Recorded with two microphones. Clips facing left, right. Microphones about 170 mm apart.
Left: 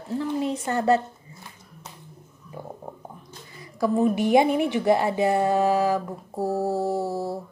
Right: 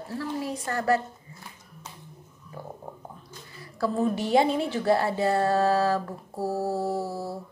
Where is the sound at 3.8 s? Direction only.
15° left (ahead or behind).